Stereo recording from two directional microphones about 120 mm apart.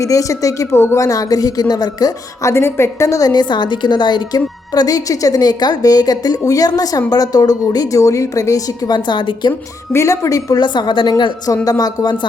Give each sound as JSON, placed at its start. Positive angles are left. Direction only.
{"t": 0.0, "sound": "a woman's voice", "side_deg": 25}
{"t": 9.5, "sound": "a woman's voice", "side_deg": 25}